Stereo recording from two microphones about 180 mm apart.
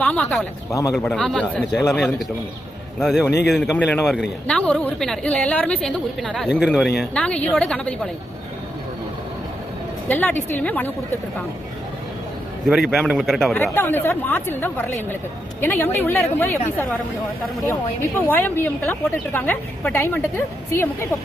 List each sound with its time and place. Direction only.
0.0 s a woman's voice: 5° left (ahead or behind)
0.7 s speech: 20° left (ahead or behind)
0.9 s a woman's voice: 5° left (ahead or behind)
10.1 s a woman's voice: 10° left (ahead or behind)
12.9 s a woman's voice: centre (ahead or behind)
13.6 s a woman's voice: 10° left (ahead or behind)
18.3 s a woman's voice: 10° left (ahead or behind)